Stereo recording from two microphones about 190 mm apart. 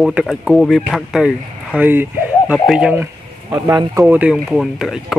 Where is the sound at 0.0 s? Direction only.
Centre (ahead or behind).